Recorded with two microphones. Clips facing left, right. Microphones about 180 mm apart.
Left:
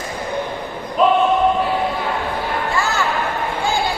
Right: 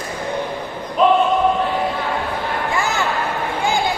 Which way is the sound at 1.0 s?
Centre (ahead or behind).